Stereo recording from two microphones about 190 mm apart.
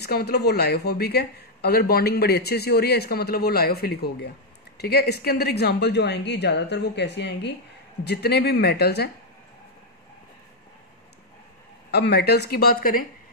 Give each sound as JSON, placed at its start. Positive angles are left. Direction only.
{"t": 0.0, "sound": "speech", "side_deg": 55}
{"t": 11.9, "sound": "speech", "side_deg": 60}